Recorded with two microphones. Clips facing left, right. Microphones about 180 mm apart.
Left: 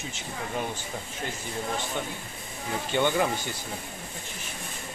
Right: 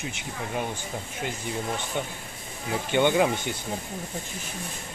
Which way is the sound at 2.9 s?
15° right (ahead or behind).